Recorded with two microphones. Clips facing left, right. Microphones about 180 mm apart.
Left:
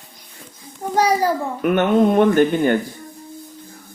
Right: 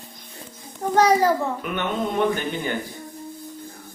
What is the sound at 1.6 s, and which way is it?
Speech, 55° left (ahead or behind).